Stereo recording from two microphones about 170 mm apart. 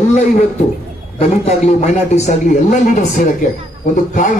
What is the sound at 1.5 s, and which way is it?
Speech, 40° left (ahead or behind).